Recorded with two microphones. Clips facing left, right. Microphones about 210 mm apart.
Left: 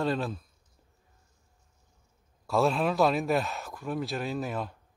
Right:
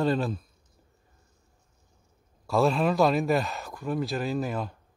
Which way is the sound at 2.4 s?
Centre (ahead or behind).